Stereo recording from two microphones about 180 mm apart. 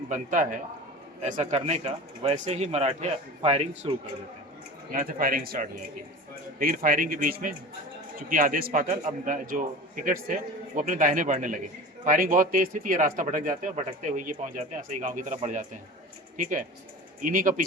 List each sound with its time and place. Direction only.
0.1 s a man's voice: 45° right (ahead or behind)
4.9 s a man's voice: 50° right (ahead or behind)